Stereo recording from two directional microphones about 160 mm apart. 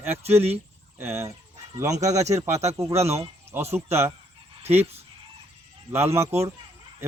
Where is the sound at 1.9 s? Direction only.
45° right (ahead or behind).